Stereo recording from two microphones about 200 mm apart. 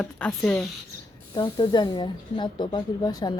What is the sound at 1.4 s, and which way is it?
Speech, 25° left (ahead or behind).